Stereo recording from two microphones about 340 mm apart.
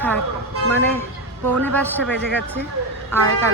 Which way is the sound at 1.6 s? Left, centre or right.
Centre.